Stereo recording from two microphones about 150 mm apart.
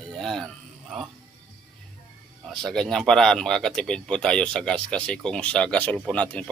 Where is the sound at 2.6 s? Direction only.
5° left (ahead or behind).